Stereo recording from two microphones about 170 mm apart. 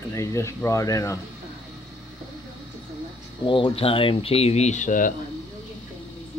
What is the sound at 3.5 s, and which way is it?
Speech, 30° left (ahead or behind).